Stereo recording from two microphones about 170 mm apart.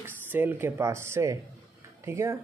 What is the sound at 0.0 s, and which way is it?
Speech, 10° right (ahead or behind).